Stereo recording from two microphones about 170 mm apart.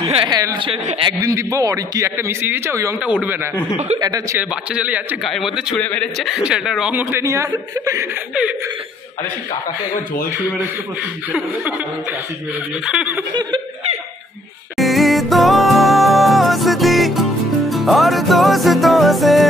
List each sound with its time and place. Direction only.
0.0 s speech: 35° right (ahead or behind)
0.3 s speech: 20° right (ahead or behind)
0.7 s a man's voice: 35° right (ahead or behind)
1.2 s a man's voice: 20° right (ahead or behind)
4.0 s speech: 20° right (ahead or behind)
4.4 s a man's voice: 10° right (ahead or behind)
10.3 s a man's voice: 10° right (ahead or behind)
12.8 s snicker: 5° right (ahead or behind)
13.3 s speech: 25° right (ahead or behind)
14.8 s music: centre (ahead or behind)